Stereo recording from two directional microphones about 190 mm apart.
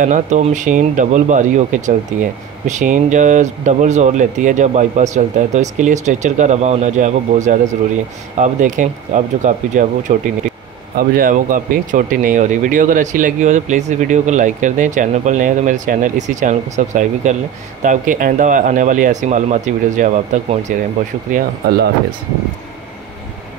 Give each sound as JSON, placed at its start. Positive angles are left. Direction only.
{"t": 0.0, "sound": "speech", "side_deg": -40}